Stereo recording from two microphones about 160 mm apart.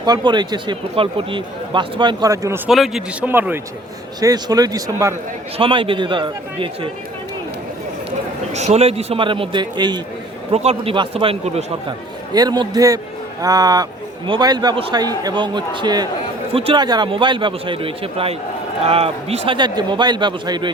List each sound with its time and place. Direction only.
0.0 s a man's voice: 25° right (ahead or behind)
2.6 s a man's voice: centre (ahead or behind); by 5.1 s 20° right (ahead or behind)
5.5 s a man's voice: 35° right (ahead or behind)
8.5 s a man's voice: 45° right (ahead or behind); by 10.0 s 25° right (ahead or behind)
10.5 s a man's voice: 40° right (ahead or behind)
11.9 s a man's voice: 25° right (ahead or behind)